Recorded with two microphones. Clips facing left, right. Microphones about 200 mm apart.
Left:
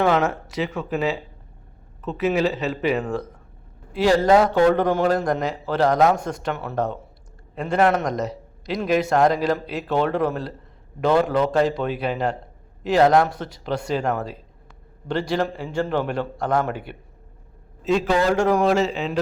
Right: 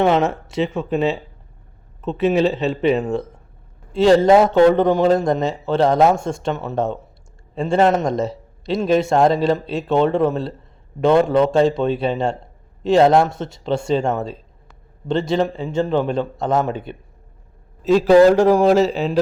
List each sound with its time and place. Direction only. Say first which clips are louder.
0.0 s a man's voice: right 3 dB; 25° right (ahead or behind)
17.8 s a man's voice: right 9 dB; 35° right (ahead or behind)